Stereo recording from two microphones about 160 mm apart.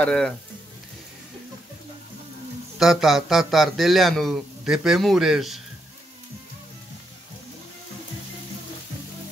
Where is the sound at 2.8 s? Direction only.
Centre (ahead or behind).